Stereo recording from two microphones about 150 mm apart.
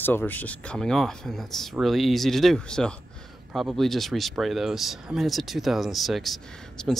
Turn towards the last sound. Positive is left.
turn(degrees=0)  # may be behind; listen again after turning